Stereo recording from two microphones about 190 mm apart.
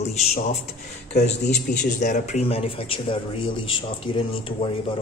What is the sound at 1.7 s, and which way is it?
Speech, 40° left (ahead or behind).